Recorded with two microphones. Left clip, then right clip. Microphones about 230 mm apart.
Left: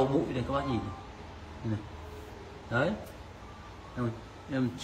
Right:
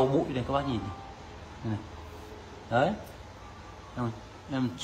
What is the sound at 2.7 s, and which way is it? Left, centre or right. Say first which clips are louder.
Speech: right 4 dB; centre.